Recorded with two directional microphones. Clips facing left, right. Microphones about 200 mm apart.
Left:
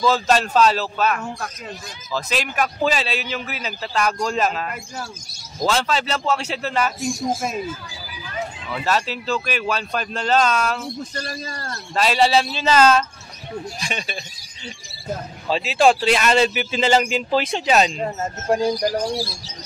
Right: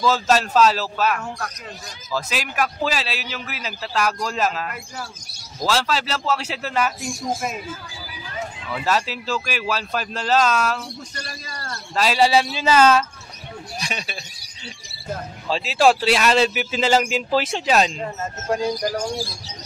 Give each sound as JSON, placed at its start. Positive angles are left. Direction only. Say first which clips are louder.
{"t": 0.0, "sound": "a man's voice", "louder": "left 1 dB", "side_deg": -5}
{"t": 5.7, "sound": "a man's voice", "louder": "left 1 dB", "side_deg": -5}
{"t": 8.7, "sound": "a man's voice", "louder": "even", "side_deg": -5}
{"t": 11.9, "sound": "a man's voice", "louder": "even", "side_deg": 0}
{"t": 15.5, "sound": "a man's voice", "louder": "left 1 dB", "side_deg": 0}
{"t": 18.0, "sound": "speech", "louder": "left 3 dB", "side_deg": 30}